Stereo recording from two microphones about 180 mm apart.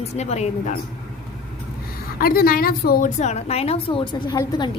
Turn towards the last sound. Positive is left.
turn(degrees=20)  # may be behind; listen again after turning